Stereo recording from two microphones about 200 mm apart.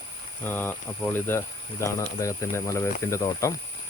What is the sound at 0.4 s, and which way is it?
Speech, 10° left (ahead or behind).